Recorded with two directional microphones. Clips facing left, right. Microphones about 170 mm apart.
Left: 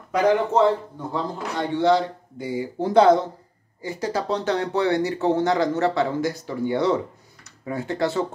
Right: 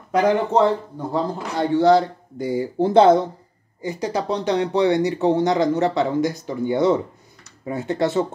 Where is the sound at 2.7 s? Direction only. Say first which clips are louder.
Right 2 dB; 25° right (ahead or behind).